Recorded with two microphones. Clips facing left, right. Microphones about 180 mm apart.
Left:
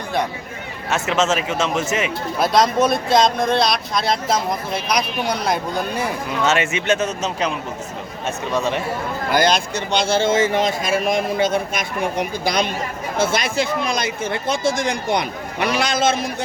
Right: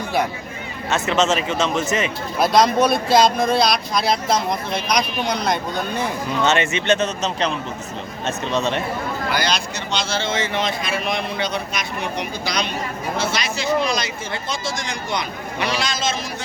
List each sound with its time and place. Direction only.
0.9 s speech: 10° left (ahead or behind)
8.5 s speech: 10° left (ahead or behind)
9.3 s speech: 50° left (ahead or behind)